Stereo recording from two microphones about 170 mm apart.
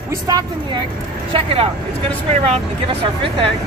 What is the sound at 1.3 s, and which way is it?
Speech, 35° right (ahead or behind).